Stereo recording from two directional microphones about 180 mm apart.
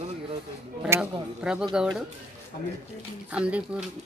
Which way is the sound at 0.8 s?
15° right (ahead or behind).